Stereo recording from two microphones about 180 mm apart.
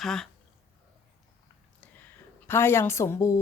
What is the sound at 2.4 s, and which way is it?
Speech, 15° left (ahead or behind).